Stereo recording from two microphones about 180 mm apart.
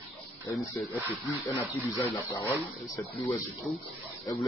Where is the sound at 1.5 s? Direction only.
15° left (ahead or behind).